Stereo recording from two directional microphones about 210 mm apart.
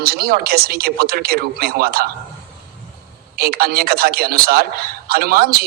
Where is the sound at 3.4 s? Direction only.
45° right (ahead or behind).